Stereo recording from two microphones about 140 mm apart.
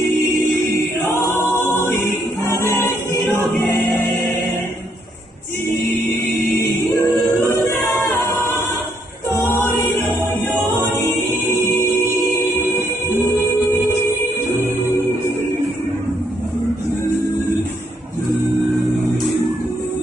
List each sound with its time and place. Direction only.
0.7 s choir: 20° left (ahead or behind)
7.0 s a capella: 25° left (ahead or behind)
10.7 s choir: 30° left (ahead or behind)
11.8 s music: 20° left (ahead or behind)